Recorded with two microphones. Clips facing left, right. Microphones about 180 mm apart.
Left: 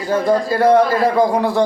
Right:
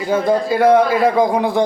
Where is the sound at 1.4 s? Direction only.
15° right (ahead or behind).